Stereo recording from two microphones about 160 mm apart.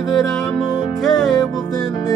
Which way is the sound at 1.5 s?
25° left (ahead or behind).